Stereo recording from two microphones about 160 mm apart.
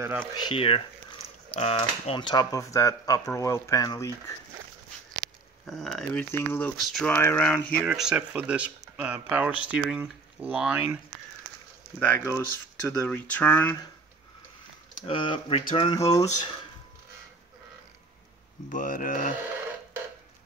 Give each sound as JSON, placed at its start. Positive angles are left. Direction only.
{"t": 0.0, "sound": "speech", "side_deg": -15}
{"t": 0.5, "sound": "speech", "side_deg": 35}
{"t": 1.8, "sound": "speech", "side_deg": 30}
{"t": 5.7, "sound": "speech", "side_deg": 0}
{"t": 6.3, "sound": "speech", "side_deg": 15}
{"t": 6.8, "sound": "speech", "side_deg": 0}
{"t": 7.2, "sound": "speech", "side_deg": 10}
{"t": 12.0, "sound": "speech", "side_deg": 15}
{"t": 15.0, "sound": "speech", "side_deg": 30}
{"t": 16.0, "sound": "speech", "side_deg": 20}
{"t": 18.7, "sound": "speech", "side_deg": 55}